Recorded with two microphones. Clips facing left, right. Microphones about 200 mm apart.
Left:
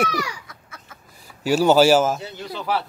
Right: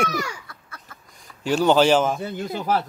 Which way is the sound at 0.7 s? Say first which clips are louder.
Even; 5° left (ahead or behind).